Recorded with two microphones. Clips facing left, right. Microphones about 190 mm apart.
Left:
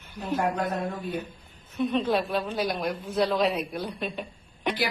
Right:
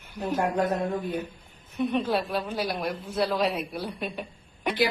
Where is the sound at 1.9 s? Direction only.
10° right (ahead or behind).